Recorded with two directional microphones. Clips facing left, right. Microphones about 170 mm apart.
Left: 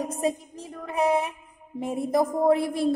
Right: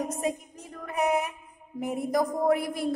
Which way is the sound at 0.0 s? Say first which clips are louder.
Left 3 dB; 30° left (ahead or behind).